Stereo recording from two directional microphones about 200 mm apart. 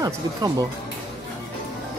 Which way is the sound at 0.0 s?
20° right (ahead or behind).